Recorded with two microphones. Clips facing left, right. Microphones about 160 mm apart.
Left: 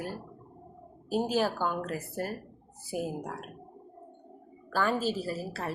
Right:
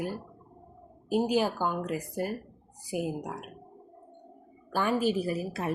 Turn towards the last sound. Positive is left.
turn(degrees=-15)  # may be behind; listen again after turning